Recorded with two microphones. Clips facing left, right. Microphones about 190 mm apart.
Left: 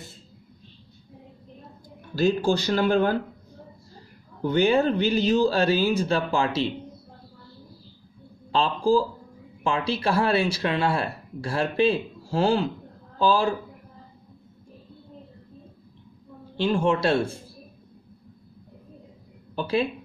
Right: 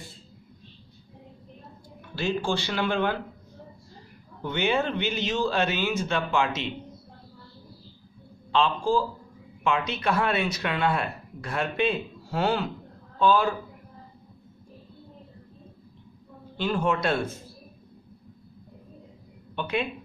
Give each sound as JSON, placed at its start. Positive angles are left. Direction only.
{"t": 2.0, "sound": "speech", "side_deg": 40}
{"t": 4.4, "sound": "speech", "side_deg": 40}
{"t": 8.5, "sound": "speech", "side_deg": 35}
{"t": 16.5, "sound": "a man's voice", "side_deg": 25}
{"t": 19.5, "sound": "speech", "side_deg": 35}